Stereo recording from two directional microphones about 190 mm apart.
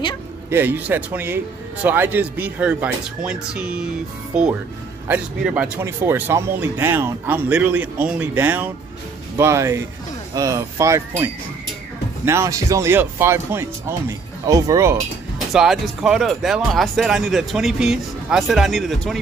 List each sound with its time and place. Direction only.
0.5 s speech: 10° right (ahead or behind)
5.0 s speech: 10° right (ahead or behind)
12.3 s speech: 15° right (ahead or behind)
15.3 s speech: centre (ahead or behind)